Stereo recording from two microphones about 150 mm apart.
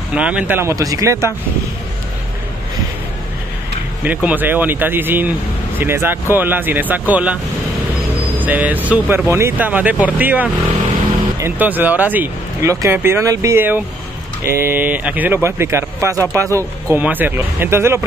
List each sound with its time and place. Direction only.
0.1 s speech: 10° right (ahead or behind)
4.0 s speech: 10° right (ahead or behind)
8.4 s speech: 10° right (ahead or behind)